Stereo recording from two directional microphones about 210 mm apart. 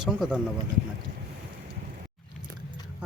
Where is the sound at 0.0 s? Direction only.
5° right (ahead or behind).